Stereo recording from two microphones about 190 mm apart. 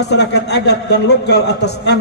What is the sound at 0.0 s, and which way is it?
A man's voice, 65° left (ahead or behind).